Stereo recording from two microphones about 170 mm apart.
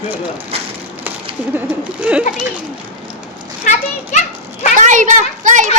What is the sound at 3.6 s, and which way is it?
Children playing, 40° left (ahead or behind).